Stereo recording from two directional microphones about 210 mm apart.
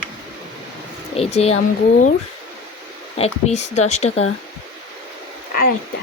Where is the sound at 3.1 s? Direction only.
30° left (ahead or behind).